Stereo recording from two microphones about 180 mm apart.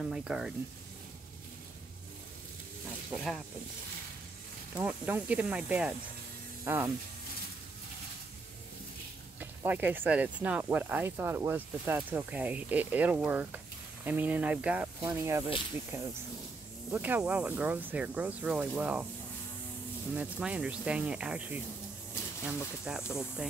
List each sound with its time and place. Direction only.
0.0 s speech: 5° right (ahead or behind)
3.1 s speech: centre (ahead or behind)
4.7 s speech: 10° right (ahead or behind)
9.4 s speech: 10° right (ahead or behind)
20.2 s speech: 5° right (ahead or behind)
22.9 s speech: 5° right (ahead or behind)